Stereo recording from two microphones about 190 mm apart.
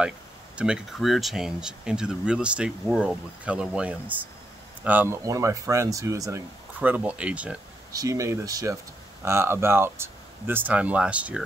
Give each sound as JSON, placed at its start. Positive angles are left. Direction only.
{"t": 0.6, "sound": "speech", "side_deg": -5}
{"t": 7.9, "sound": "speech", "side_deg": -15}